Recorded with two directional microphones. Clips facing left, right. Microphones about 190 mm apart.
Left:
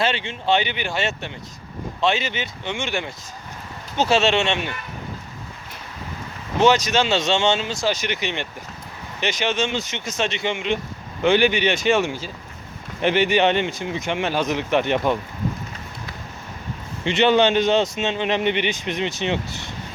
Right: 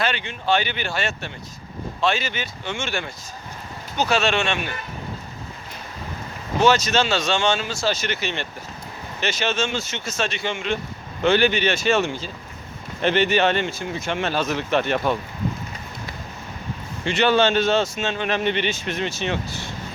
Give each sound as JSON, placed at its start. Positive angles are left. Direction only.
{"t": 0.0, "sound": "speech", "side_deg": 25}
{"t": 6.6, "sound": "speech", "side_deg": 15}
{"t": 17.0, "sound": "speech", "side_deg": 20}